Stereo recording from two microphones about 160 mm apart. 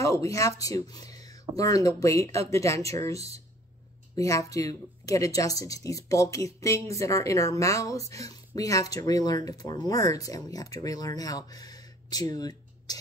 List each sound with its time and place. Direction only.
0.0 s speech: 20° left (ahead or behind)